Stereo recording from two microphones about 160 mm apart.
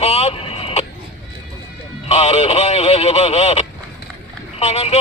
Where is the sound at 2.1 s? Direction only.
40° left (ahead or behind).